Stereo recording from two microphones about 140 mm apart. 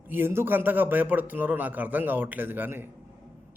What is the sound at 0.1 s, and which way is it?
A man's voice, 15° right (ahead or behind).